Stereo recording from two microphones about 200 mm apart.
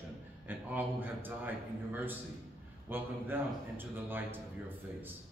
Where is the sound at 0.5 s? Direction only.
10° right (ahead or behind).